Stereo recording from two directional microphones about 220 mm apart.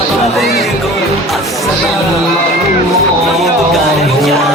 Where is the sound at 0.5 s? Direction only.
Centre (ahead or behind).